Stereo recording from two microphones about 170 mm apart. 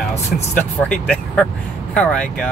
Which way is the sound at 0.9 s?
5° left (ahead or behind).